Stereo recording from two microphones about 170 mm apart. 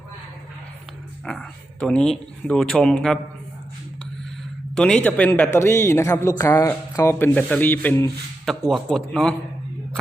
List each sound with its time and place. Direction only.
1.2 s speech: 5° left (ahead or behind)
4.7 s speech: 5° left (ahead or behind)